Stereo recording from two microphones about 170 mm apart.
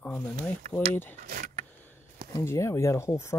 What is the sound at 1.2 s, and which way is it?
Vehicle, 60° right (ahead or behind).